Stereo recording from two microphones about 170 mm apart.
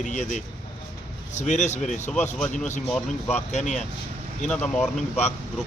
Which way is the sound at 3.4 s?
40° left (ahead or behind).